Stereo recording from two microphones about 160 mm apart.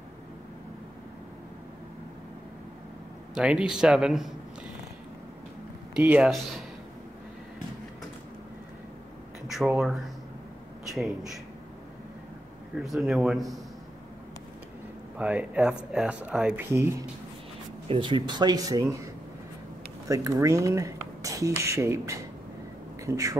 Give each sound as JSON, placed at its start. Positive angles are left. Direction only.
{"t": 3.3, "sound": "speech", "side_deg": -5}
{"t": 5.9, "sound": "speech", "side_deg": -10}
{"t": 9.5, "sound": "speech", "side_deg": 0}
{"t": 11.0, "sound": "speech", "side_deg": 0}
{"t": 12.8, "sound": "speech", "side_deg": 0}
{"t": 15.1, "sound": "speech", "side_deg": -10}
{"t": 16.7, "sound": "speech", "side_deg": -20}
{"t": 17.8, "sound": "speech", "side_deg": -30}
{"t": 20.1, "sound": "speech", "side_deg": -20}